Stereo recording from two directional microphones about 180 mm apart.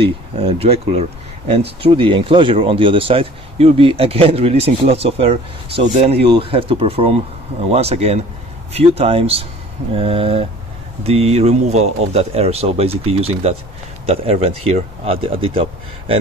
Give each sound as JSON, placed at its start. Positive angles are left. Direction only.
{"t": 0.0, "sound": "speech", "side_deg": -35}